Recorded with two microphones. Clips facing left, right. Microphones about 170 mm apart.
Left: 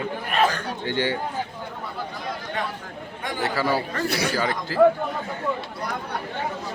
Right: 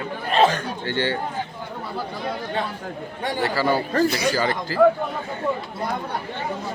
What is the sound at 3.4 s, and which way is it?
Speech, centre (ahead or behind).